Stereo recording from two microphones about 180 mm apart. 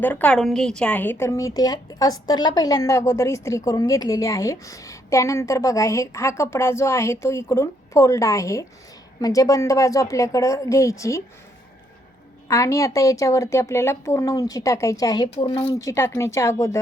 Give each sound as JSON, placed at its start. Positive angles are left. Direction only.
{"t": 0.0, "sound": "a woman's voice", "side_deg": 10}
{"t": 12.5, "sound": "a woman's voice", "side_deg": 15}